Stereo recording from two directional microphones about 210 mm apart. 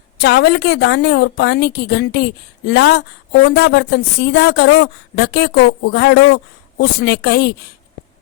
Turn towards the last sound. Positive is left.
turn(degrees=55)  # may be behind; listen again after turning